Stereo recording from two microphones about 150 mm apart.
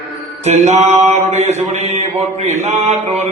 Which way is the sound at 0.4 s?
50° right (ahead or behind).